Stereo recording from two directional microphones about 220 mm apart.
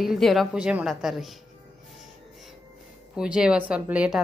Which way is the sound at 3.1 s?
5° right (ahead or behind).